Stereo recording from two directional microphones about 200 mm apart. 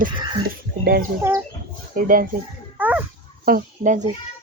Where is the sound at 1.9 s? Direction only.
45° right (ahead or behind).